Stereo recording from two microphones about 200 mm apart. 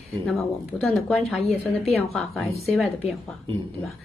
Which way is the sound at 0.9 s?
Centre (ahead or behind).